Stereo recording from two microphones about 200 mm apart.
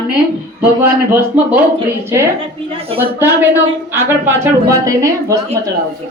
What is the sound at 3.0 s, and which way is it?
Speech, 10° right (ahead or behind).